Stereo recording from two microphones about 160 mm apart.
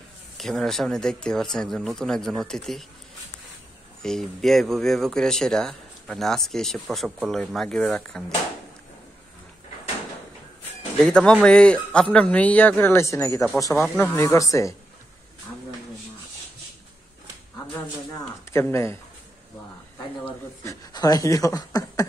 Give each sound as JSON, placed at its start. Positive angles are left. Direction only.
{"t": 0.4, "sound": "speech", "side_deg": 0}
{"t": 4.0, "sound": "speech", "side_deg": 0}
{"t": 11.0, "sound": "a man's voice", "side_deg": 5}
{"t": 13.8, "sound": "a man's voice", "side_deg": 5}
{"t": 14.1, "sound": "speech", "side_deg": 20}
{"t": 18.5, "sound": "a man's voice", "side_deg": 15}
{"t": 20.9, "sound": "speech", "side_deg": 25}